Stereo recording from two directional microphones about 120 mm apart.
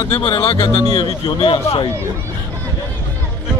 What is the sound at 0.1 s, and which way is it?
Speech, 50° left (ahead or behind).